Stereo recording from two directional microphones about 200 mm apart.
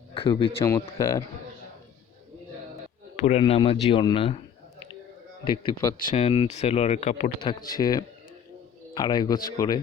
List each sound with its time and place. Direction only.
0.1 s speech: 25° left (ahead or behind)
3.2 s speech: 35° left (ahead or behind)
5.5 s speech: 25° left (ahead or behind)
7.7 s speech: 20° left (ahead or behind)